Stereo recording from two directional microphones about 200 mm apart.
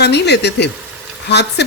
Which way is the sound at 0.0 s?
55° left (ahead or behind).